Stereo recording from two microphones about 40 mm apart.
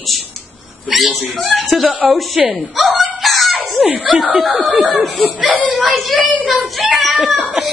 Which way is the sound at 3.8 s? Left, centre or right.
Right.